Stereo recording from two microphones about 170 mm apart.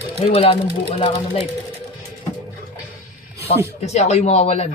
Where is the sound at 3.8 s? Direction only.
40° left (ahead or behind).